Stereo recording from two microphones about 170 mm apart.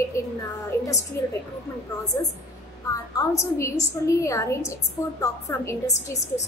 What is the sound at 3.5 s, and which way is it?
A woman's voice, 20° left (ahead or behind).